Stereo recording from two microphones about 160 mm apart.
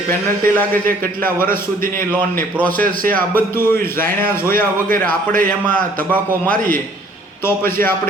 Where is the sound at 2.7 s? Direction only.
60° right (ahead or behind).